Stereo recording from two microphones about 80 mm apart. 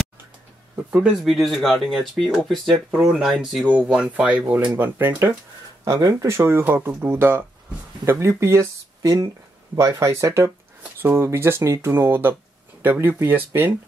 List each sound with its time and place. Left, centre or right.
0.9 s speech: centre
1.3 s speech: centre
3.6 s speech: centre
5.9 s speech: right